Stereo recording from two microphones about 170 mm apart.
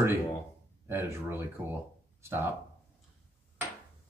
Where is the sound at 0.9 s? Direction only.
15° right (ahead or behind).